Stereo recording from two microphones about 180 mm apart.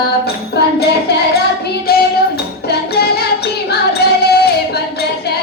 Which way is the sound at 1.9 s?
60° left (ahead or behind).